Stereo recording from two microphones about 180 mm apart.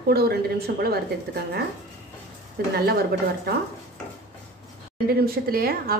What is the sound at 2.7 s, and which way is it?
Speech, 60° right (ahead or behind).